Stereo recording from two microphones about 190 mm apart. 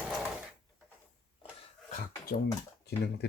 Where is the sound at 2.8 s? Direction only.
60° left (ahead or behind).